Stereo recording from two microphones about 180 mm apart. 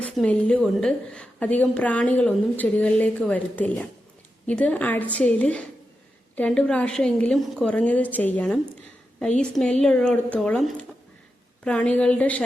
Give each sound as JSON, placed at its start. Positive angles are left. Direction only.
{"t": 0.0, "sound": "a woman's voice", "side_deg": 5}